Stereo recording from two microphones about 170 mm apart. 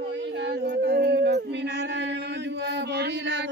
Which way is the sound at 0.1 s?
90° right.